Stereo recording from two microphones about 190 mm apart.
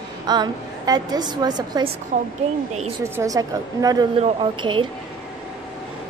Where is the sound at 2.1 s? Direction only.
40° right (ahead or behind).